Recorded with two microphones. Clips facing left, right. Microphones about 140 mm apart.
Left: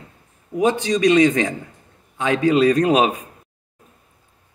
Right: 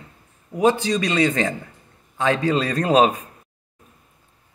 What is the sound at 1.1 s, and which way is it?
Speech, 15° left (ahead or behind).